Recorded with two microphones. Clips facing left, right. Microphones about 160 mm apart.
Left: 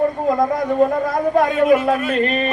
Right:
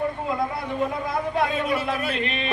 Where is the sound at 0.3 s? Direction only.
40° left (ahead or behind).